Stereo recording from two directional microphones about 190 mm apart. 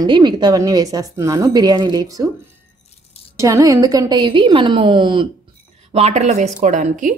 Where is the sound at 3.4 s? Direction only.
15° right (ahead or behind); by 7.2 s 45° right (ahead or behind).